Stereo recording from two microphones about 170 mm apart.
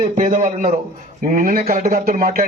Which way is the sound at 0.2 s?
50° right (ahead or behind).